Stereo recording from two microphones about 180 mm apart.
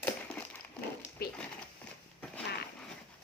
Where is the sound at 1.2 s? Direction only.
60° left (ahead or behind).